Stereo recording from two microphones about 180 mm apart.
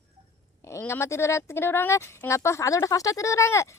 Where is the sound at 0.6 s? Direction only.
15° left (ahead or behind).